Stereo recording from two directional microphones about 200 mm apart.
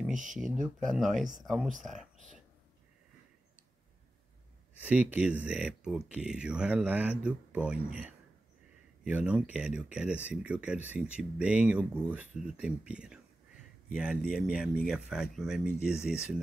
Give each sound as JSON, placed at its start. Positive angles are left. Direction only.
{"t": 0.1, "sound": "speech", "side_deg": -40}
{"t": 0.6, "sound": "speech", "side_deg": 0}
{"t": 4.8, "sound": "speech", "side_deg": -5}